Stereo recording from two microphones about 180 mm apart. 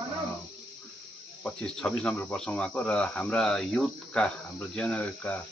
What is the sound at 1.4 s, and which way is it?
Speech, 5° left (ahead or behind).